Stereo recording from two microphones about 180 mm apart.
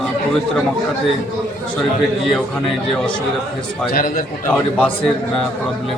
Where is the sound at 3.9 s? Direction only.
50° left (ahead or behind).